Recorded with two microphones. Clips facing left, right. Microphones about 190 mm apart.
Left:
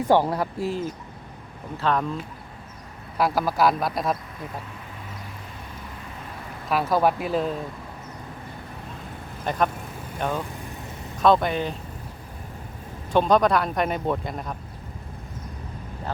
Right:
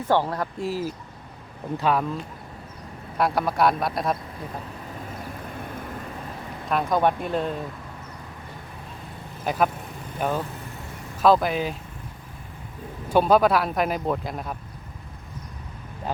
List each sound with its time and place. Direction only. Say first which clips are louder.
0.1 s speech: left 2 dB; 10° left (ahead or behind)
0.6 s a man's voice: even; 5° right (ahead or behind)
3.2 s a man's voice: even; centre (ahead or behind)
6.7 s a man's voice: left 1 dB; 5° left (ahead or behind)
9.5 s a man's voice: right 1 dB; 5° right (ahead or behind)
13.1 s a man's voice: right 1 dB; 5° right (ahead or behind)